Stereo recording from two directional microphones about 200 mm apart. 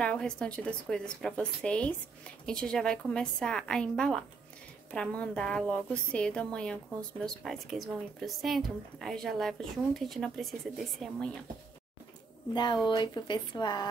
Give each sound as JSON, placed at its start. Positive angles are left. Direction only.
{"t": 0.0, "sound": "a woman's voice", "side_deg": 5}
{"t": 12.8, "sound": "speech", "side_deg": 20}